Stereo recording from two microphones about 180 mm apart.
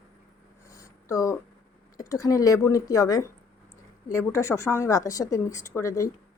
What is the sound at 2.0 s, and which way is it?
A man's voice, 20° left (ahead or behind).